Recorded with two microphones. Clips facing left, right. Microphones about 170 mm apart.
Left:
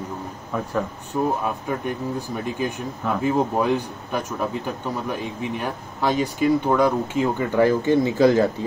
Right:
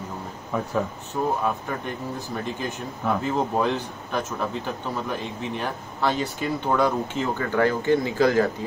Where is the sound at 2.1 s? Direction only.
10° left (ahead or behind).